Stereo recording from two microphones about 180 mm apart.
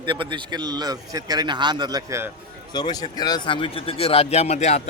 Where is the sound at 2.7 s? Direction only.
20° left (ahead or behind).